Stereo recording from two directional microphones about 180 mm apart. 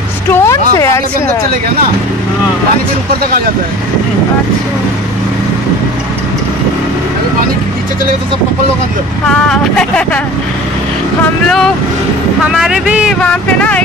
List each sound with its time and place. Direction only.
0.3 s music: 15° left (ahead or behind)
9.3 s speech: 5° left (ahead or behind)
11.4 s speech: 5° left (ahead or behind)
13.2 s speech: 5° left (ahead or behind)